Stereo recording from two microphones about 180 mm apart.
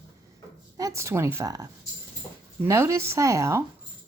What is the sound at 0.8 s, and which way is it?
Speech, 15° right (ahead or behind).